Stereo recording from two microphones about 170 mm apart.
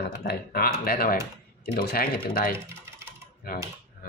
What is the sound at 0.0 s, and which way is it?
Speech, 75° left (ahead or behind).